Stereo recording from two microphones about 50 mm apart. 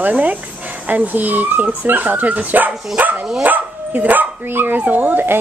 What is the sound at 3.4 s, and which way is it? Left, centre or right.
Dog, right.